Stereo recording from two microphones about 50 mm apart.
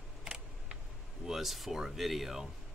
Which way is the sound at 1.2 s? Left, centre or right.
Centre.